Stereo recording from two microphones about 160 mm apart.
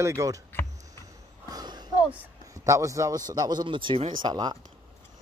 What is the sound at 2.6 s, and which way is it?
A man's voice, 20° right (ahead or behind).